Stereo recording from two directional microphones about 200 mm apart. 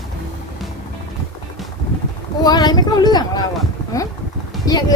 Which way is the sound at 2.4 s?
20° left (ahead or behind).